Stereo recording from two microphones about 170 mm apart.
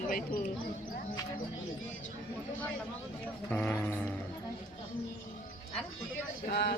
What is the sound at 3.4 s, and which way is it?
Music, 10° left (ahead or behind).